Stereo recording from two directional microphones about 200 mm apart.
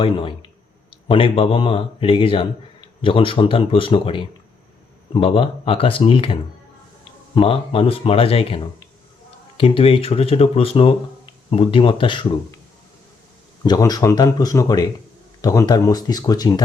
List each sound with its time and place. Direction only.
0.0 s speech: 25° left (ahead or behind)
13.7 s speech: 20° left (ahead or behind)